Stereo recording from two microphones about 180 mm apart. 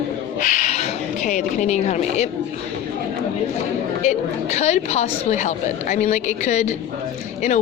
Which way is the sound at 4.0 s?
40° left (ahead or behind).